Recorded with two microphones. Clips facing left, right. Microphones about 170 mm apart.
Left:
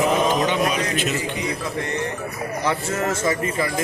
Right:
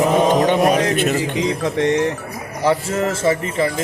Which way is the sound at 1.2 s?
90° right.